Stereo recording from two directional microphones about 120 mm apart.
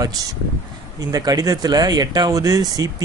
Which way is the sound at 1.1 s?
30° right (ahead or behind).